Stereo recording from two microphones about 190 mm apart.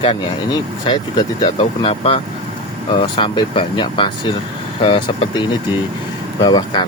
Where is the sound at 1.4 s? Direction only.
25° left (ahead or behind).